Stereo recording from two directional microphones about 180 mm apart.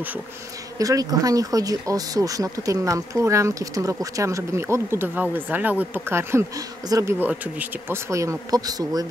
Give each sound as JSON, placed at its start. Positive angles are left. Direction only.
{"t": 0.7, "sound": "speech", "side_deg": -20}